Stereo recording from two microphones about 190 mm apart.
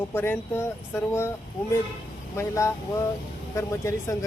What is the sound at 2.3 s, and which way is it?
A man's voice, 15° left (ahead or behind).